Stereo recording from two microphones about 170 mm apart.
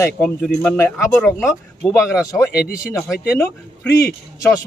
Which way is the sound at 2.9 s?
15° left (ahead or behind).